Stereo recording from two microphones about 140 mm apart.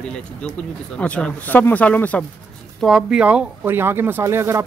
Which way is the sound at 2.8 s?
Centre (ahead or behind).